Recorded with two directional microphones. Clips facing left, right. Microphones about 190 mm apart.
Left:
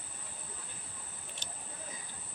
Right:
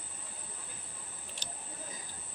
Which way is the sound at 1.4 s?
40° right (ahead or behind).